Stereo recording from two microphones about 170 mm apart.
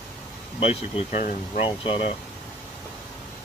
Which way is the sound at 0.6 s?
35° left (ahead or behind).